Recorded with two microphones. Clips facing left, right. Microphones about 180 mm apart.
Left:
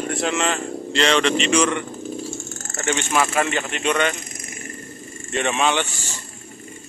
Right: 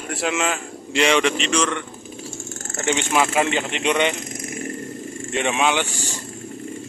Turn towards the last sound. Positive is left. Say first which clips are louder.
# right 1 dB
turn(degrees=-15)  # may be behind; listen again after turning